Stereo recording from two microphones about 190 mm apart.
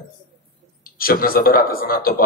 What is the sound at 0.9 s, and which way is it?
A man's voice, 50° left (ahead or behind).